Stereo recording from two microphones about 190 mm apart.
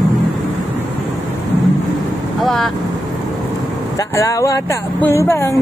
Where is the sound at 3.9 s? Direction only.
15° left (ahead or behind).